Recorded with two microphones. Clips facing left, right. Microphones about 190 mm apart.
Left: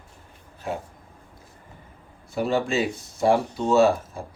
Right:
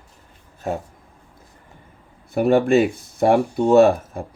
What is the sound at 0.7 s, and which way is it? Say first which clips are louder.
Speech: right 5 dB; 45° right (ahead or behind).